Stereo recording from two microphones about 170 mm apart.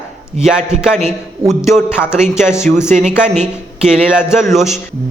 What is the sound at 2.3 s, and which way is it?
Speech, 5° right (ahead or behind).